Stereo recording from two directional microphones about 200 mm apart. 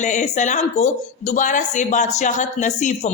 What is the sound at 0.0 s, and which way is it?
Speech, 35° left (ahead or behind).